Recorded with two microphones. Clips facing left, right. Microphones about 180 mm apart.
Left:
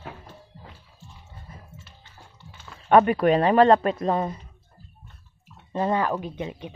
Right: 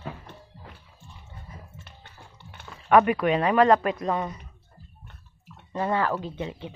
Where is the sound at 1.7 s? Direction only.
60° right (ahead or behind).